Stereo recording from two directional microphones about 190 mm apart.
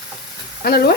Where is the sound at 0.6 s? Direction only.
55° left (ahead or behind).